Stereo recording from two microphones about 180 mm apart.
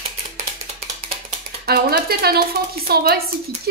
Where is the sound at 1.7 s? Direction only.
60° right (ahead or behind).